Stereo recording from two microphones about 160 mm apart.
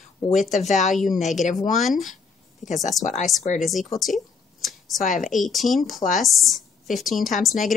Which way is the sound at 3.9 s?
Centre (ahead or behind).